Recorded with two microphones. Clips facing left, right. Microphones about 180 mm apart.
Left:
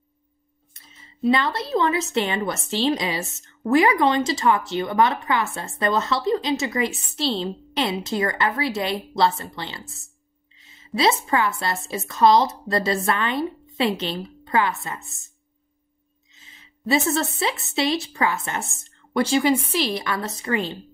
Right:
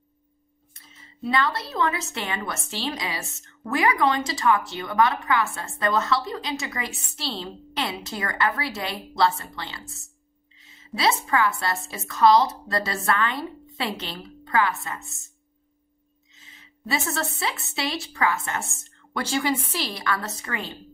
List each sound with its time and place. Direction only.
1.2 s a woman's voice: 20° left (ahead or behind)
11.0 s a woman's voice: 25° left (ahead or behind)
16.8 s a woman's voice: 20° left (ahead or behind)